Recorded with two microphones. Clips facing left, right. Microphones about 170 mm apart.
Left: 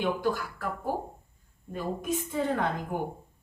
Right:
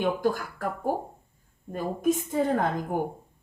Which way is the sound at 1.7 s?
45° right (ahead or behind).